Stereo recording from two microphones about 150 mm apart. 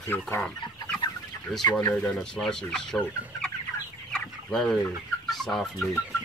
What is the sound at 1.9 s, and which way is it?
Chicken, 5° left (ahead or behind).